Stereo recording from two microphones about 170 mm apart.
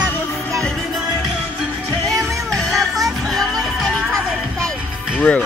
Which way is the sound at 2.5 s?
Centre (ahead or behind).